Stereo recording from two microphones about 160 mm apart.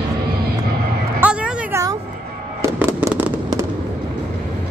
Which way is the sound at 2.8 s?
10° right (ahead or behind).